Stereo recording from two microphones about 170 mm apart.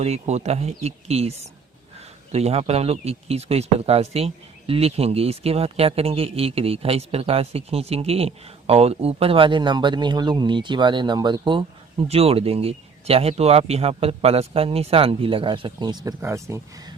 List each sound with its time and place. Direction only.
0.0 s speech: 40° right (ahead or behind)
12.0 s speech: 35° right (ahead or behind); by 16.6 s 15° right (ahead or behind)